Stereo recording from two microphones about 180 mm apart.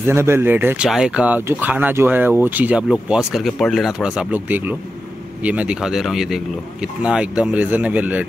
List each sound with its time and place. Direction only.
0.0 s speech: 15° right (ahead or behind)